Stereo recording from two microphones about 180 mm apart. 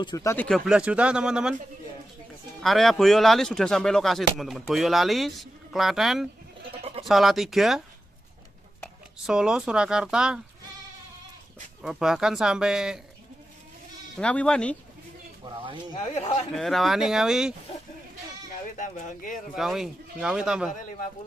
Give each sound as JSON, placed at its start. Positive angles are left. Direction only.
{"t": 0.0, "sound": "speech", "side_deg": 20}
{"t": 0.5, "sound": "speech", "side_deg": -5}
{"t": 2.6, "sound": "speech", "side_deg": 0}
{"t": 6.8, "sound": "bleat", "side_deg": -35}
{"t": 7.1, "sound": "speech", "side_deg": 0}
{"t": 9.2, "sound": "speech", "side_deg": -5}
{"t": 11.8, "sound": "speech", "side_deg": -5}
{"t": 14.1, "sound": "speech", "side_deg": 5}
{"t": 15.4, "sound": "speech", "side_deg": -25}
{"t": 15.9, "sound": "speech", "side_deg": 35}
{"t": 16.5, "sound": "speech", "side_deg": 0}
{"t": 18.8, "sound": "speech", "side_deg": 45}
{"t": 19.5, "sound": "speech", "side_deg": 0}